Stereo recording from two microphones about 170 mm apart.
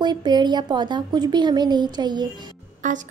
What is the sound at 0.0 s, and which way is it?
A woman's voice, 25° right (ahead or behind).